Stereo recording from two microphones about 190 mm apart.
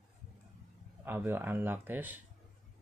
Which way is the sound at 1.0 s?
10° right (ahead or behind).